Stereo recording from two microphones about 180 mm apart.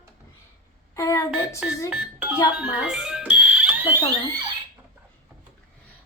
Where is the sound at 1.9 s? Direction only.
5° right (ahead or behind).